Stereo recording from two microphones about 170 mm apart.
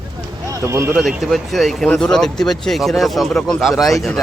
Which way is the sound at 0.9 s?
Centre (ahead or behind).